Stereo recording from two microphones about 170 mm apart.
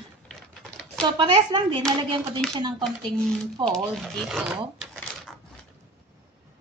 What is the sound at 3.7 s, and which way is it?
Speech, centre (ahead or behind).